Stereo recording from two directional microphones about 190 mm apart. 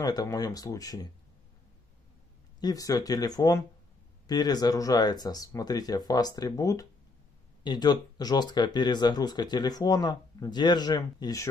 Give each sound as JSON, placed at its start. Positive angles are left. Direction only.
{"t": 0.0, "sound": "speech", "side_deg": 20}
{"t": 2.6, "sound": "speech", "side_deg": 20}